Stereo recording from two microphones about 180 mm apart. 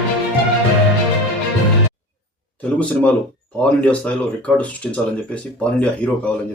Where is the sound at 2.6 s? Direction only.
5° left (ahead or behind).